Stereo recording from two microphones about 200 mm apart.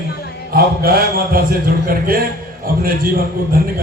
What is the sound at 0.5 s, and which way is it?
A man's voice, 50° right (ahead or behind).